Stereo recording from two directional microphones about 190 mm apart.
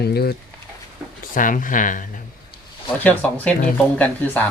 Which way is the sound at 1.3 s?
45° left (ahead or behind).